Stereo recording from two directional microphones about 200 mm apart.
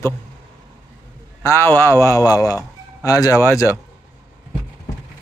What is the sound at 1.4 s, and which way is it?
Speech, 15° left (ahead or behind).